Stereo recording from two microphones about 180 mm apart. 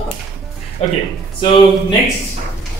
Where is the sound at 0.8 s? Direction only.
35° left (ahead or behind).